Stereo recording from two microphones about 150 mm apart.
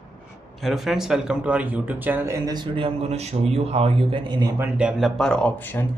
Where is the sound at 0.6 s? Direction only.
Centre (ahead or behind); by 2.5 s 20° right (ahead or behind).